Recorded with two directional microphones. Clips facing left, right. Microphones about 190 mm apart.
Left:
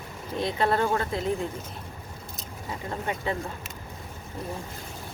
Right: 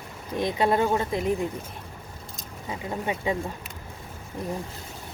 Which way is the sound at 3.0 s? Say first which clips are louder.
Right 3 dB; 15° right (ahead or behind).